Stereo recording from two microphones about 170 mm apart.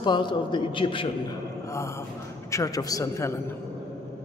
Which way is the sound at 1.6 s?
15° left (ahead or behind).